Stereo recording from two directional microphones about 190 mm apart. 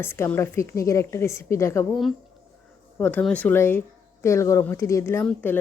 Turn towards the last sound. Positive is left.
turn(degrees=10)  # may be behind; listen again after turning